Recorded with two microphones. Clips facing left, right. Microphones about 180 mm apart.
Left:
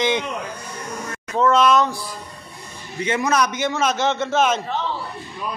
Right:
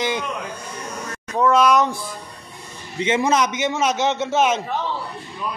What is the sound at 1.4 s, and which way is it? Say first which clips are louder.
Speech: even; 10° right (ahead or behind).